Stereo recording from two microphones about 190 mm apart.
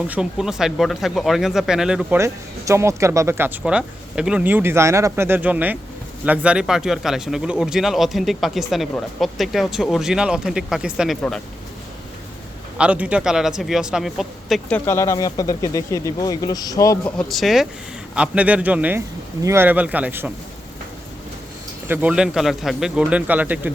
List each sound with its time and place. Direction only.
0.1 s speech: 5° right (ahead or behind)
12.7 s speech: 5° right (ahead or behind)
14.8 s speech: 15° left (ahead or behind)
17.2 s speech: centre (ahead or behind)
21.8 s speech: 10° right (ahead or behind)